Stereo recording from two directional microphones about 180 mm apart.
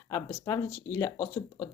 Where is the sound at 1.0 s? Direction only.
15° left (ahead or behind).